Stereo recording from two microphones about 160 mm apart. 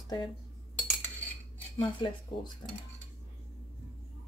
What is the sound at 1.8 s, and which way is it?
Speech, 25° left (ahead or behind).